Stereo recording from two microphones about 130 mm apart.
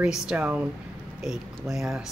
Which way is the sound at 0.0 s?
5° right (ahead or behind).